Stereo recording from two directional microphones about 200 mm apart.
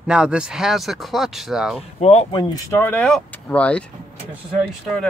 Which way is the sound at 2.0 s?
30° left (ahead or behind).